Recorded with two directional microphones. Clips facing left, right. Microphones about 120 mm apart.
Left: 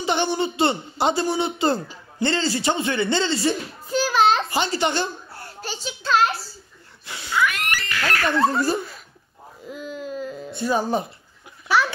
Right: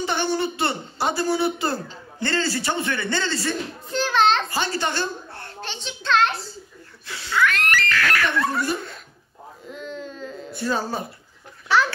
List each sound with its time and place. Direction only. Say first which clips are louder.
0.0 s a man's voice: left 1 dB; 15° left (ahead or behind)
4.5 s a child's voice: left 3 dB; 20° left (ahead or behind)
7.1 s a man's voice: right 1 dB; 15° left (ahead or behind)
8.0 s a sound: left 6 dB; 30° left (ahead or behind)
9.7 s wail: left 3 dB; 5° left (ahead or behind)
10.5 s speech: left 3 dB; 15° left (ahead or behind)